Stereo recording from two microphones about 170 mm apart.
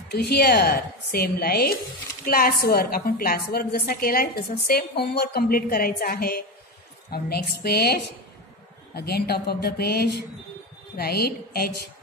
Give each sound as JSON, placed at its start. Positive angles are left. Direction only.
{"t": 0.1, "sound": "a woman's voice", "side_deg": 70}